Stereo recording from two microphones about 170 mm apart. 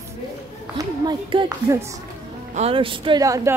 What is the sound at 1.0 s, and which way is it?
Speech, 25° right (ahead or behind).